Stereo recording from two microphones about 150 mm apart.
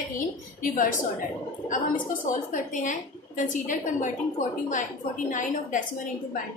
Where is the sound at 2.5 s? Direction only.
55° left (ahead or behind).